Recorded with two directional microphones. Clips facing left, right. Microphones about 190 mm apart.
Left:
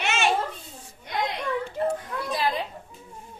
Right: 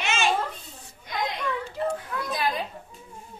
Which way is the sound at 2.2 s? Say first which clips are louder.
Left 2 dB; 30° left (ahead or behind).